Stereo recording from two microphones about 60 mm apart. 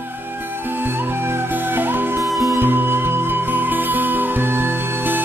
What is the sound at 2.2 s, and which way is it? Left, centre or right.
Music, centre.